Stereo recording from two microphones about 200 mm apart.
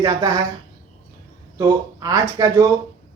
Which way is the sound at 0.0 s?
20° right (ahead or behind).